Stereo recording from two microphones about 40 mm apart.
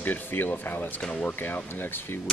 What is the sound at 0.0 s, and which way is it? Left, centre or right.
Speech, left.